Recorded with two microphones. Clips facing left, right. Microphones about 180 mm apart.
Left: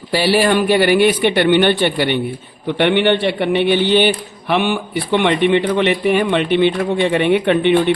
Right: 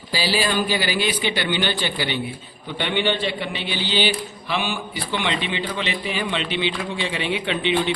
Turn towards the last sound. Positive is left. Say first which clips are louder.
# left 9 dB
turn(degrees=55)  # may be behind; listen again after turning